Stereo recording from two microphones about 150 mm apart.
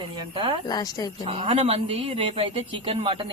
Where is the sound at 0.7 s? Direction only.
25° left (ahead or behind).